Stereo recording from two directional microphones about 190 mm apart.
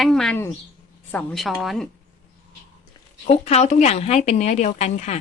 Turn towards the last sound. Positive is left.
turn(degrees=35)  # may be behind; listen again after turning